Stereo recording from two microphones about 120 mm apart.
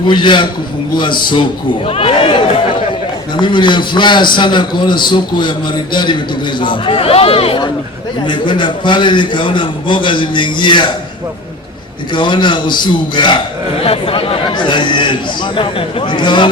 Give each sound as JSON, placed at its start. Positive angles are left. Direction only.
{"t": 0.1, "sound": "a man's voice", "side_deg": 40}
{"t": 1.9, "sound": "speech", "side_deg": 50}
{"t": 3.3, "sound": "a man's voice", "side_deg": 40}
{"t": 12.1, "sound": "a man's voice", "side_deg": 40}
{"t": 13.8, "sound": "a man's voice", "side_deg": 50}